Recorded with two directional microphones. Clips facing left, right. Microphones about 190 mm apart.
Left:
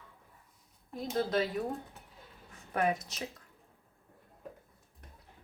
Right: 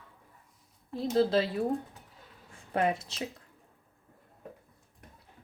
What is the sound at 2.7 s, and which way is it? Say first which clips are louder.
Speech: right 2 dB; 30° right (ahead or behind).